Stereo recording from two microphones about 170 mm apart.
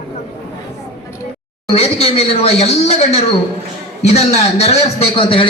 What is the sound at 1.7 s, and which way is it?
A man's voice, 35° left (ahead or behind).